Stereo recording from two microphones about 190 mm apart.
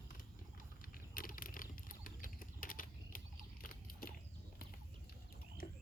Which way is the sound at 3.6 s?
50° left (ahead or behind).